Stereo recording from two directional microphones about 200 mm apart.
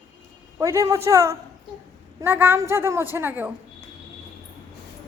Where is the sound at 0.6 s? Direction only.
15° right (ahead or behind).